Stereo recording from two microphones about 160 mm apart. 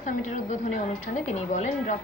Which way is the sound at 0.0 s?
50° left (ahead or behind).